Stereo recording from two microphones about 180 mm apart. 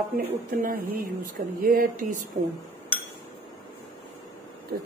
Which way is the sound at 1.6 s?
50° right (ahead or behind).